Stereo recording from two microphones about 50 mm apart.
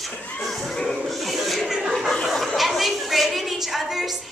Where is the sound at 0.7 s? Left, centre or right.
Centre.